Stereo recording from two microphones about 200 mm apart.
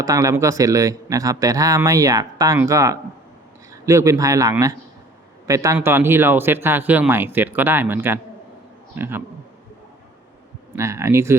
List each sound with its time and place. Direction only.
0.0 s a man's voice: 15° right (ahead or behind)
10.8 s a man's voice: 15° right (ahead or behind)